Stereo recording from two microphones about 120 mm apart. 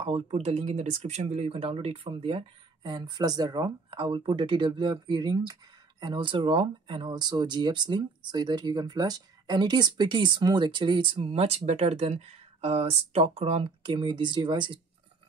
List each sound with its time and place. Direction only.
0.0 s speech: 55° right (ahead or behind)
2.8 s speech: 35° right (ahead or behind); by 13.9 s 55° right (ahead or behind)
13.9 s speech: 40° right (ahead or behind)